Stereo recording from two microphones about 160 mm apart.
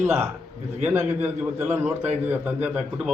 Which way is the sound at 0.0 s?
15° right (ahead or behind).